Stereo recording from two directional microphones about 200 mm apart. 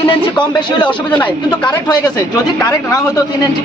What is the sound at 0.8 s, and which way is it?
Speech, 5° left (ahead or behind).